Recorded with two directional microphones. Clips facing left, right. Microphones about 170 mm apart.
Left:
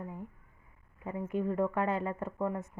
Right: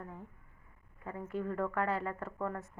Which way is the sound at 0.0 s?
15° left (ahead or behind).